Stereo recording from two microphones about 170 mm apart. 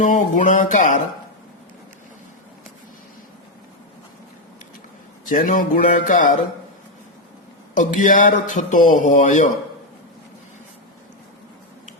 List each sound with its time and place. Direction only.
0.0 s a man's voice: 50° left (ahead or behind)
5.2 s a man's voice: 50° left (ahead or behind)
7.8 s a man's voice: 50° left (ahead or behind)